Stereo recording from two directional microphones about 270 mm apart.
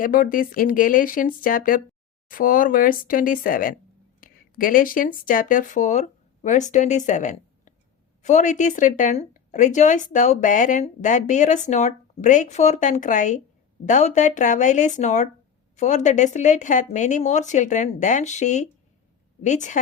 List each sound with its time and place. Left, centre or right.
0.0 s a woman's voice: left